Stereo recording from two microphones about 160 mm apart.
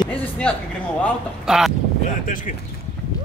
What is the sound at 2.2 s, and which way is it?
Speech, 55° left (ahead or behind).